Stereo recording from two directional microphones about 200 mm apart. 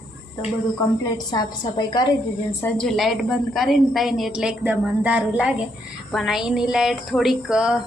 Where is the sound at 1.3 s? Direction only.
20° left (ahead or behind).